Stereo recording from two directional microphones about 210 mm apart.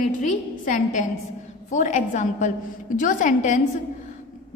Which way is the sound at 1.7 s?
35° left (ahead or behind).